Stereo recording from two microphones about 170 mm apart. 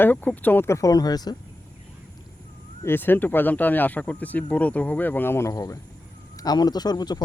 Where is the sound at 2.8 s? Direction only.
10° left (ahead or behind).